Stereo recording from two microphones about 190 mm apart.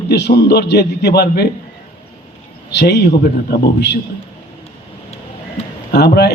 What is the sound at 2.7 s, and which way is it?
A man's voice, 60° left (ahead or behind).